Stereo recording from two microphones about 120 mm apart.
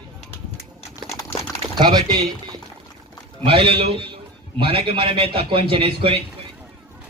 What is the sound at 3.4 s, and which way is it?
A man's voice, 50° right (ahead or behind).